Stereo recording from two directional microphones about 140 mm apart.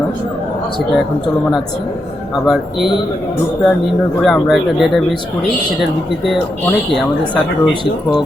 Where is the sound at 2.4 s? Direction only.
Centre (ahead or behind).